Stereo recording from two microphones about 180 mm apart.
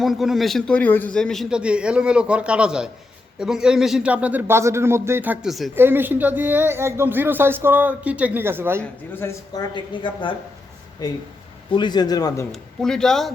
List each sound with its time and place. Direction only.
0.0 s a man's voice: centre (ahead or behind)
5.7 s speech: 10° right (ahead or behind)
8.8 s speech: 10° left (ahead or behind)
9.7 s speech: 25° left (ahead or behind)
12.5 s a man's voice: 5° left (ahead or behind)